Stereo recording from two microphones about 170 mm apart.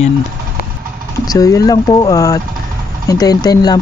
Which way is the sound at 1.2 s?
20° left (ahead or behind).